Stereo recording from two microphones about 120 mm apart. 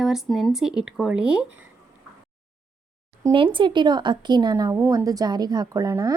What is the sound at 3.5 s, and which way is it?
A woman's voice, 40° right (ahead or behind).